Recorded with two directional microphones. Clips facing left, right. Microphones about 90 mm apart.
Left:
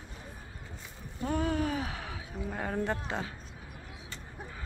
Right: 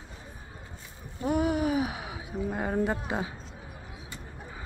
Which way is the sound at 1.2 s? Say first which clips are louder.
Right 4 dB; 15° right (ahead or behind).